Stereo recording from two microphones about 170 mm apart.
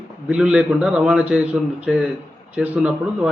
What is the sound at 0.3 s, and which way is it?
A man's voice, 5° right (ahead or behind).